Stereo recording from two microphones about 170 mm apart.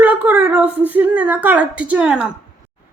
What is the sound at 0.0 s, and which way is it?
A woman's voice, 10° right (ahead or behind).